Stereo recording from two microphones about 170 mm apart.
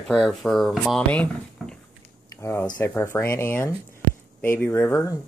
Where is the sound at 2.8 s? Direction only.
10° left (ahead or behind).